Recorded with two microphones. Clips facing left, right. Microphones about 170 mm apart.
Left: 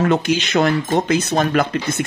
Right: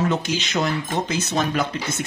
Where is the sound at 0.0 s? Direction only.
60° left (ahead or behind).